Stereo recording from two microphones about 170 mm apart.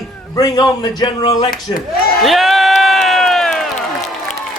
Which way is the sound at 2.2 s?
Centre (ahead or behind).